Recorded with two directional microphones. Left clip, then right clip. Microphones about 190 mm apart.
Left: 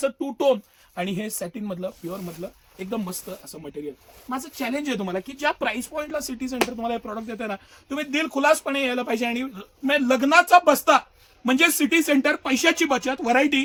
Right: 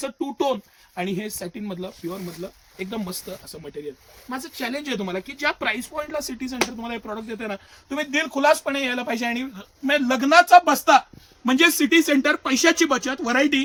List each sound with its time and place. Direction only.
0.0 s speech: 35° left (ahead or behind)
1.6 s speech: 25° left (ahead or behind)
4.3 s speech: 20° left (ahead or behind); by 13.7 s 40° left (ahead or behind)